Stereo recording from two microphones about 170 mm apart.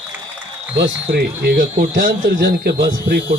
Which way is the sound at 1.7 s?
55° right (ahead or behind).